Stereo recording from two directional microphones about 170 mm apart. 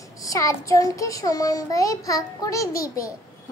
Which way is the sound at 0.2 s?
20° left (ahead or behind).